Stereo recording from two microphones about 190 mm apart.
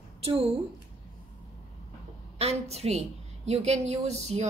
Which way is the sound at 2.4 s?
35° right (ahead or behind).